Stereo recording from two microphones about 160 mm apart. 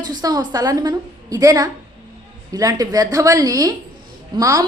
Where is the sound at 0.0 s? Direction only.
25° right (ahead or behind).